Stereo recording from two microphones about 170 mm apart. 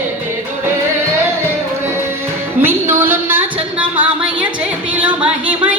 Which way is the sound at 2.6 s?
10° right (ahead or behind).